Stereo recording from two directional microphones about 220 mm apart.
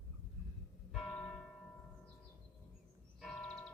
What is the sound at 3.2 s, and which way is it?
Church bell, centre (ahead or behind).